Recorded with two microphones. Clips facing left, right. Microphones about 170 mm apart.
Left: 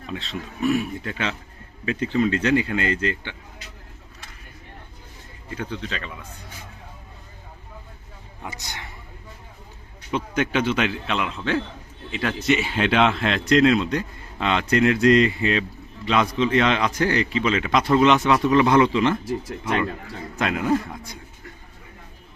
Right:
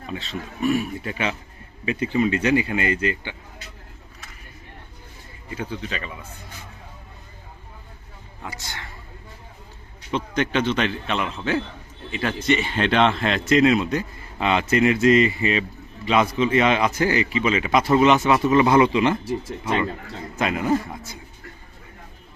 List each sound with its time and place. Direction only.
0.1 s speech: centre (ahead or behind)
5.5 s speech: 5° right (ahead or behind)
8.4 s speech: 20° left (ahead or behind)
10.1 s a man's voice: 5° left (ahead or behind); by 19.2 s 15° right (ahead or behind)
19.6 s speech: 5° right (ahead or behind)